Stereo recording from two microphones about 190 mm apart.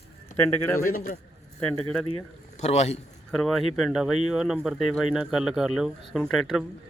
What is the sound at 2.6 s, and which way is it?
Speech, 35° left (ahead or behind).